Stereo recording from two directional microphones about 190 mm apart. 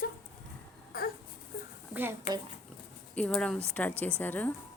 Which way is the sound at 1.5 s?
50° left (ahead or behind).